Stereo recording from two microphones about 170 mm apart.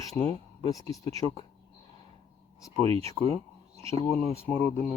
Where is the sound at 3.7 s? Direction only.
35° right (ahead or behind).